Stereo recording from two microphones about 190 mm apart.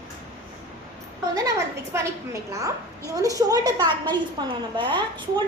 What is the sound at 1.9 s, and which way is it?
A woman's voice, 15° right (ahead or behind).